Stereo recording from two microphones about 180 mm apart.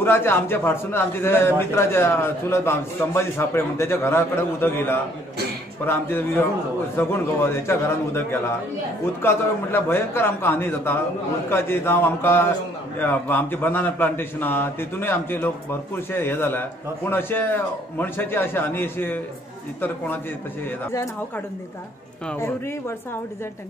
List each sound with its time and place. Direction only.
0.0 s a man's voice: 15° left (ahead or behind)
22.3 s a man's voice: 15° left (ahead or behind)